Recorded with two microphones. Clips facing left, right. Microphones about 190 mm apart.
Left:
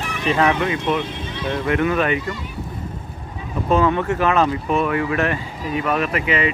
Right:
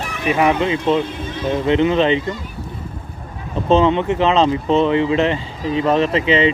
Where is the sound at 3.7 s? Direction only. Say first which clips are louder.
Right 4 dB; 20° right (ahead or behind).